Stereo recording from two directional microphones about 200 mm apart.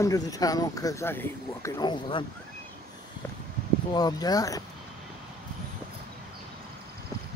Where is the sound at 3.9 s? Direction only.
20° left (ahead or behind).